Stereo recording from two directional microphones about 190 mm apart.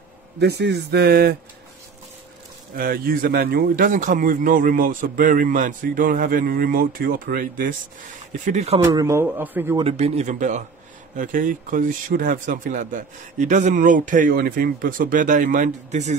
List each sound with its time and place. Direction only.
0.4 s speech: 60° right (ahead or behind)
2.8 s a man's voice: 50° right (ahead or behind); by 8.8 s 35° right (ahead or behind)
8.8 s a man's voice: 15° right (ahead or behind)
9.8 s a man's voice: 30° right (ahead or behind)